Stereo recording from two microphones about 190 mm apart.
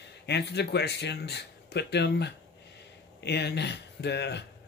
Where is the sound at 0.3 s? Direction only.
60° left (ahead or behind).